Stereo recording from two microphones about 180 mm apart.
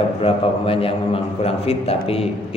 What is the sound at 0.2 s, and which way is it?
A man's voice, 30° left (ahead or behind).